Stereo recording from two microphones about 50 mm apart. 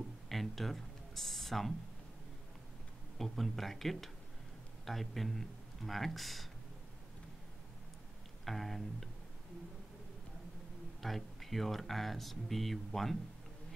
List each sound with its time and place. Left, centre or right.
0.3 s a sound: centre
3.2 s speech: centre
8.5 s speech: centre
11.0 s speech: centre